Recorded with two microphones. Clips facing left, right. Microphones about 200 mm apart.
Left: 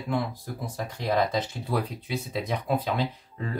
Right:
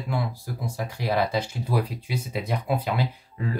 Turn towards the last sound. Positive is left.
turn(degrees=-5)  # may be behind; listen again after turning